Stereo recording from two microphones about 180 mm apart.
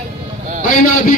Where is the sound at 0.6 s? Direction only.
50° left (ahead or behind).